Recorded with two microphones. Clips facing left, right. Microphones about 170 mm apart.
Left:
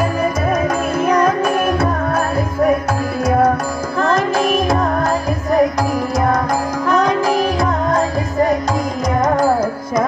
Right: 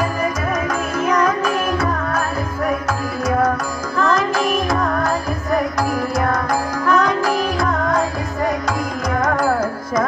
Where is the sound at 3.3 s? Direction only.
30° left (ahead or behind).